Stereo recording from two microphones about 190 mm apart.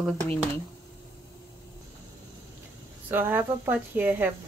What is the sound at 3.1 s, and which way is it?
Speech, 10° right (ahead or behind).